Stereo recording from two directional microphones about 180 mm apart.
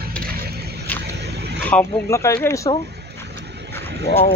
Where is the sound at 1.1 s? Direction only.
70° right (ahead or behind).